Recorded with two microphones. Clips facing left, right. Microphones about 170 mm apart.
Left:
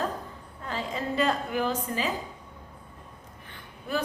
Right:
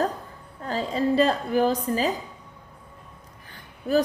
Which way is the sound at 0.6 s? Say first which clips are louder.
Right 7 dB; 35° right (ahead or behind).